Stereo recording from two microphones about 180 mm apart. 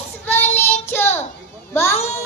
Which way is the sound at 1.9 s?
40° left (ahead or behind).